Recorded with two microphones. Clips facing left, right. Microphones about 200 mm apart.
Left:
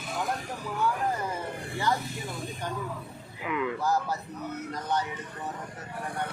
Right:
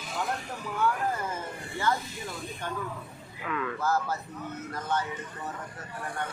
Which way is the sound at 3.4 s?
15° left (ahead or behind).